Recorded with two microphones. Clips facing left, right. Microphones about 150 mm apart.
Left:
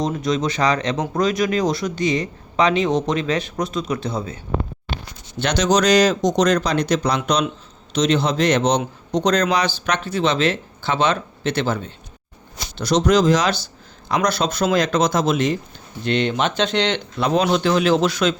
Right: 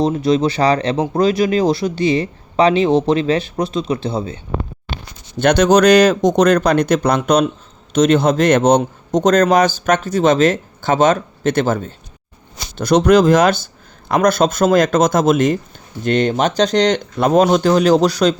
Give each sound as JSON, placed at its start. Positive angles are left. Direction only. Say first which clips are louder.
{"t": 0.0, "sound": "speech", "louder": "right 6 dB", "side_deg": -30}
{"t": 5.4, "sound": "a man's voice", "louder": "right 7 dB", "side_deg": -55}